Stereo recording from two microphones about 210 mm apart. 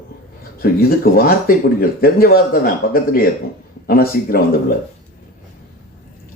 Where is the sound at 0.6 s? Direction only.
45° left (ahead or behind).